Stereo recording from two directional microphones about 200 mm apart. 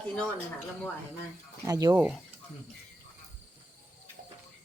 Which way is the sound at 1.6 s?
15° right (ahead or behind).